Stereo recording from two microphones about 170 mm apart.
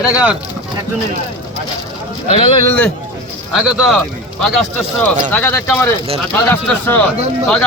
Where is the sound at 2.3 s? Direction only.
35° left (ahead or behind).